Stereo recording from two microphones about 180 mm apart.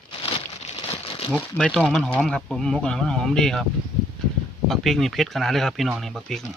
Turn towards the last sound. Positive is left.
turn(degrees=0)  # may be behind; listen again after turning